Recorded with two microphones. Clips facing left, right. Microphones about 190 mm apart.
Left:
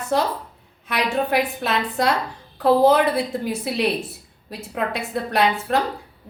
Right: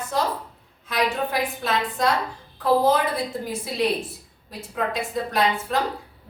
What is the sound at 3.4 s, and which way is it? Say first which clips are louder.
Speech: left 3 dB; 70° left (ahead or behind).